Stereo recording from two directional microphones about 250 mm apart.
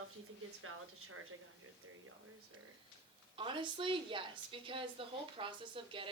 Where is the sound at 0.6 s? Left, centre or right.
Right.